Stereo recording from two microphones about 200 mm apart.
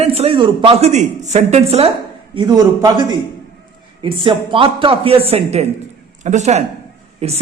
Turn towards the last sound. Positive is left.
turn(degrees=-30)  # may be behind; listen again after turning